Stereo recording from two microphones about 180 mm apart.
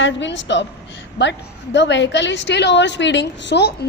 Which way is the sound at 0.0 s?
90° left.